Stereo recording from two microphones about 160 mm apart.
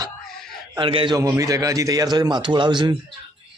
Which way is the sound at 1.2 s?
20° right (ahead or behind).